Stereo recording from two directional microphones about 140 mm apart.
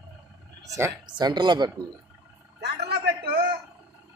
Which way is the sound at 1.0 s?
30° right (ahead or behind).